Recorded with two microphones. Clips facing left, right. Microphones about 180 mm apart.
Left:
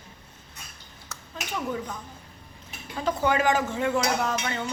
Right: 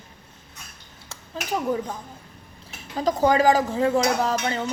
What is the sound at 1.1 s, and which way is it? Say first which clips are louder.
Speech: right 6 dB; 35° right (ahead or behind).